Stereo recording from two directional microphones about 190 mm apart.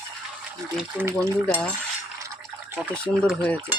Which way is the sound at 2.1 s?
15° right (ahead or behind).